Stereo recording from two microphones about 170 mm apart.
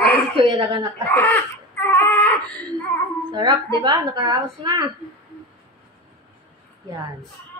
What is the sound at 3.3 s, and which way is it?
A woman's voice, 25° right (ahead or behind).